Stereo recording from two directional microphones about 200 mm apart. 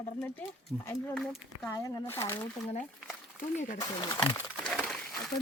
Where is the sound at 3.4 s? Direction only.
40° left (ahead or behind).